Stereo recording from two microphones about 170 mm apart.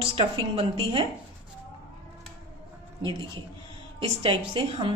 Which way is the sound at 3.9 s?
30° right (ahead or behind).